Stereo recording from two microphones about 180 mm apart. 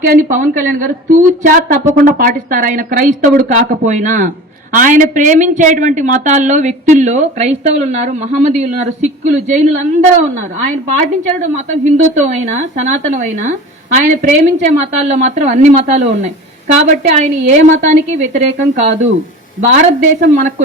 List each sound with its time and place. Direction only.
0.1 s a woman's voice: 45° right (ahead or behind)
20.2 s speech: 50° right (ahead or behind)